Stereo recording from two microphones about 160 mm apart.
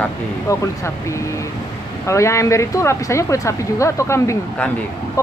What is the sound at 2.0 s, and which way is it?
Speech, 20° left (ahead or behind).